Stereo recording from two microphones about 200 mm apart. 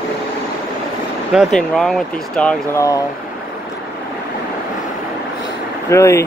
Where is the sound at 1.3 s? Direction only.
Centre (ahead or behind).